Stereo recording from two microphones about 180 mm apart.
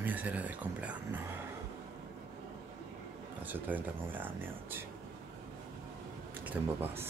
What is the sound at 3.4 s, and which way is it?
Speech, 10° right (ahead or behind).